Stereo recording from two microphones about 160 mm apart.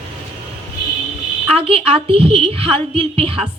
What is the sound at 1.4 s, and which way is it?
A woman's voice, 35° right (ahead or behind).